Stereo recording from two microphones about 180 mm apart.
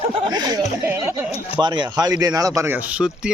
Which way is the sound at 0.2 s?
25° right (ahead or behind).